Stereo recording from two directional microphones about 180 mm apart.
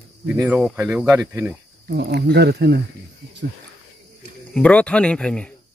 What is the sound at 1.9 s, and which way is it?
Speech, 65° right (ahead or behind).